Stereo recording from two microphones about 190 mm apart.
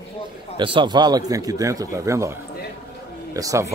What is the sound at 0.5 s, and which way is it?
A man's voice, 25° right (ahead or behind).